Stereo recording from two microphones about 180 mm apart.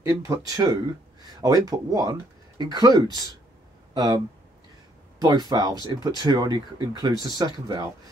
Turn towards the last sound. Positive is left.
turn(degrees=-20)  # may be behind; listen again after turning